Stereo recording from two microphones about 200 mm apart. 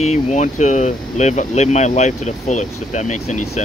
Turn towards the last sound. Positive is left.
turn(degrees=35)  # may be behind; listen again after turning